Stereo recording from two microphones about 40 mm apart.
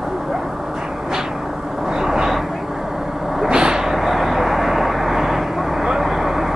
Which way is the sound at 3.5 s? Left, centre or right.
Right.